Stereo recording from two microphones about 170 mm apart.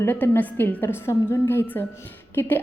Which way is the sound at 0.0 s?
10° left (ahead or behind).